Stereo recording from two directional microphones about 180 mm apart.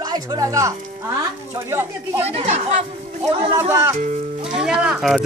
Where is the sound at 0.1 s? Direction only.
20° right (ahead or behind).